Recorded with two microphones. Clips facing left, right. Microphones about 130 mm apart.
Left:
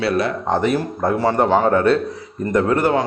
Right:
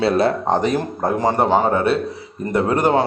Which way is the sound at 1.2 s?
15° right (ahead or behind).